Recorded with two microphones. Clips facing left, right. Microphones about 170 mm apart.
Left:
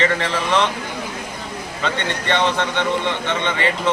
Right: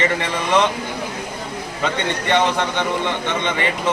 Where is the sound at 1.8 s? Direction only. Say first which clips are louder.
Right 2 dB; 15° right (ahead or behind).